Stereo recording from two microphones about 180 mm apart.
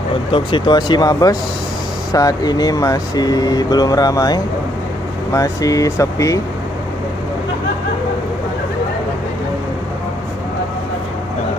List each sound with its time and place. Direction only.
0.3 s speech: 25° left (ahead or behind)